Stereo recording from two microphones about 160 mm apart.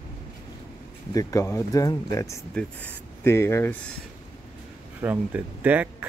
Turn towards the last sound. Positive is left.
turn(degrees=-10)  # may be behind; listen again after turning